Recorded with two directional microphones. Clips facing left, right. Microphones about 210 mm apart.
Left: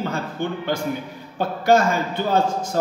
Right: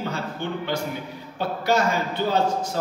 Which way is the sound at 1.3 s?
50° left (ahead or behind).